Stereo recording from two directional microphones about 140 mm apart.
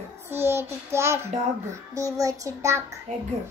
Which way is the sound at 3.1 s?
55° right (ahead or behind).